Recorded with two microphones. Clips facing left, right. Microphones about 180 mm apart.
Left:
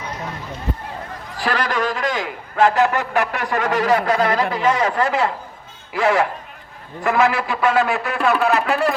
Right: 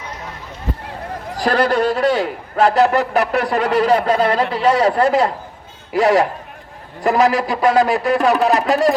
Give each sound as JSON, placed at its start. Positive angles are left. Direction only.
{"t": 1.4, "sound": "a man's voice", "side_deg": -45}